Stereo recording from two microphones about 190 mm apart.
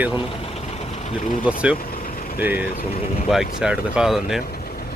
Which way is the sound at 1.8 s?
50° left (ahead or behind).